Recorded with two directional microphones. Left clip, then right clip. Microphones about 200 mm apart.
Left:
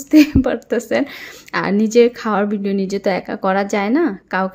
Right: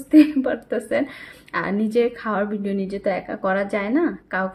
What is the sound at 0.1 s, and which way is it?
A woman's voice, 30° left (ahead or behind).